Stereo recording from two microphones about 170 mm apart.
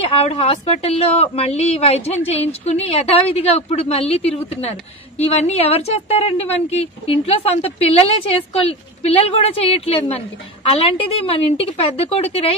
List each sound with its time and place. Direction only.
0.0 s a woman's voice: 35° left (ahead or behind)